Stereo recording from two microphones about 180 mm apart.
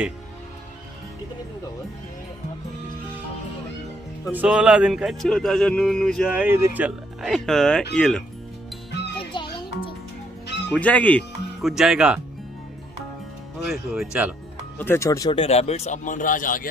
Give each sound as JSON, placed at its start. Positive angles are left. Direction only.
{"t": 4.3, "sound": "a man's voice", "side_deg": -5}
{"t": 6.4, "sound": "a man's voice", "side_deg": -10}
{"t": 9.3, "sound": "music", "side_deg": 30}
{"t": 10.7, "sound": "speech", "side_deg": 10}
{"t": 13.7, "sound": "a man's voice", "side_deg": -5}
{"t": 14.8, "sound": "speech", "side_deg": 15}
{"t": 15.4, "sound": "a man's voice", "side_deg": 35}